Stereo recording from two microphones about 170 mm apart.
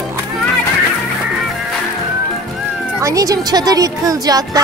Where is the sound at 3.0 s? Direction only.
20° right (ahead or behind).